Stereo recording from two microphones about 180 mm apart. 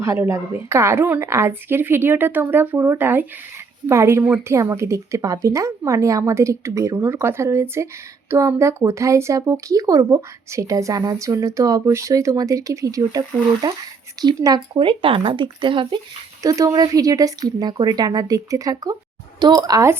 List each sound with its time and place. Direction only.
0.0 s speech: 15° right (ahead or behind)